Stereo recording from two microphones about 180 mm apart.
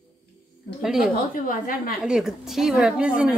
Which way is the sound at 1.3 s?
50° left (ahead or behind).